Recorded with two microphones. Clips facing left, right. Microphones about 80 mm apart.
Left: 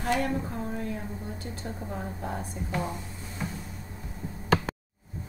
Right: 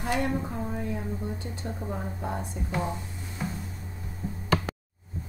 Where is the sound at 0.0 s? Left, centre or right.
Centre.